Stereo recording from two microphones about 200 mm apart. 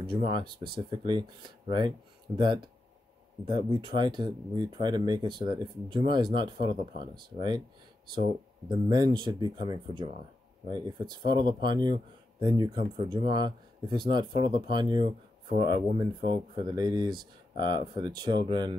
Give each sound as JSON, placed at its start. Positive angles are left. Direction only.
{"t": 0.1, "sound": "speech", "side_deg": -25}
{"t": 8.8, "sound": "speech", "side_deg": -20}